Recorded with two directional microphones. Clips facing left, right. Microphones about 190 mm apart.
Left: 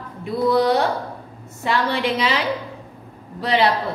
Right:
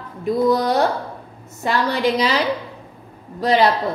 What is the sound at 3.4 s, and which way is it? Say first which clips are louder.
Speech: right 3 dB; 40° right (ahead or behind).